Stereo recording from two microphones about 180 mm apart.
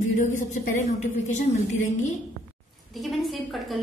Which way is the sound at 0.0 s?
45° left (ahead or behind).